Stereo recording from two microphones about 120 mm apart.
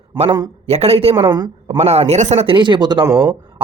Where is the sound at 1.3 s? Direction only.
40° right (ahead or behind).